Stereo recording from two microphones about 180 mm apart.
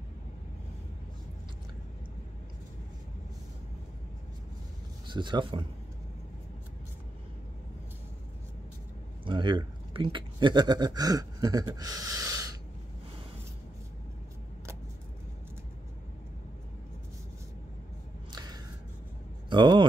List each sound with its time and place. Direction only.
5.0 s speech: 25° right (ahead or behind)
9.2 s speech: 25° right (ahead or behind)
18.3 s a sound: 25° right (ahead or behind)
19.5 s speech: 25° right (ahead or behind)